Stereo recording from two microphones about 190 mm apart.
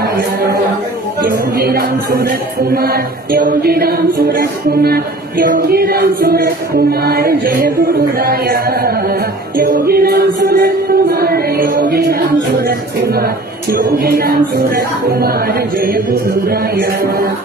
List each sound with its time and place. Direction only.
1.2 s music: 50° right (ahead or behind)
16.4 s music: 55° right (ahead or behind)